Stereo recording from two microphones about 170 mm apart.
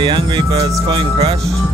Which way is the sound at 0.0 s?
25° right (ahead or behind).